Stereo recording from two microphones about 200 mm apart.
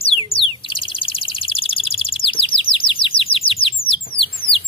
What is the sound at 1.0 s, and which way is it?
Bird, 25° left (ahead or behind).